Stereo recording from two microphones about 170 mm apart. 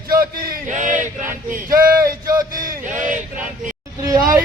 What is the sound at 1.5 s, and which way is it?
Speech, 55° right (ahead or behind).